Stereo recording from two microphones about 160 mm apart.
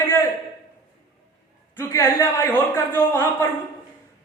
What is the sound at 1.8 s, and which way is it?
A man's voice, 15° left (ahead or behind).